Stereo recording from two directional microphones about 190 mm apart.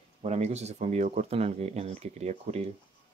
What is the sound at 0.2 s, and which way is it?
Speech, 35° right (ahead or behind).